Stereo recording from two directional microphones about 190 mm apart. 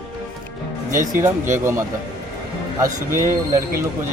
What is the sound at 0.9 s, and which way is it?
Speech, 45° right (ahead or behind).